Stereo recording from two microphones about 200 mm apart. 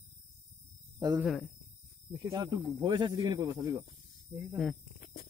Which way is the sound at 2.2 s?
20° right (ahead or behind).